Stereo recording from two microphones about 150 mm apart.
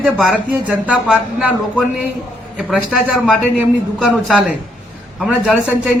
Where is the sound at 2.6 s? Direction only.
5° right (ahead or behind).